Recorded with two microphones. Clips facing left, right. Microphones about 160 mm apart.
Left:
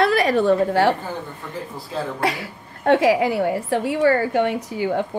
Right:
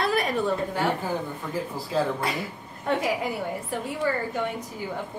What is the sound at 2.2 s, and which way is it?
A woman's voice, 75° left (ahead or behind).